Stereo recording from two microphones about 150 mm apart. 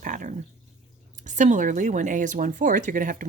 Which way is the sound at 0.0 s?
60° right (ahead or behind).